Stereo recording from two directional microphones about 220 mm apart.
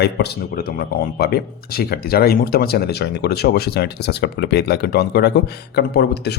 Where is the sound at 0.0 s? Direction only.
45° left (ahead or behind).